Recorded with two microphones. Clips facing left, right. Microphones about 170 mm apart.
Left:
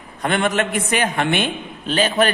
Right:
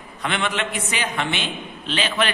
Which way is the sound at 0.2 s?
45° left (ahead or behind).